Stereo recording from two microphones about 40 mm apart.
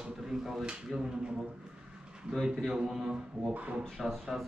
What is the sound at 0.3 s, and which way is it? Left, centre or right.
A man's voice, centre.